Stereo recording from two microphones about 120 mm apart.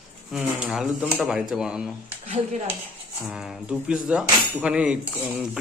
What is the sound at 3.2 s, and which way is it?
Speech, 5° right (ahead or behind).